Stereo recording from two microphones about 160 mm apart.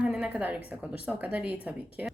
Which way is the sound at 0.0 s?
5° right (ahead or behind).